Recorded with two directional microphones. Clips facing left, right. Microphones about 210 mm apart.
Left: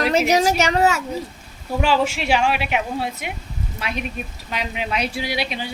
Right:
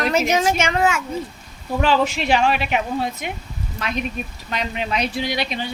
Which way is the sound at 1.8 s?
10° left (ahead or behind).